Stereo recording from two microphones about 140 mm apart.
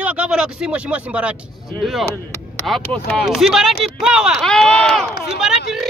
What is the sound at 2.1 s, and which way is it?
Chop, 15° left (ahead or behind).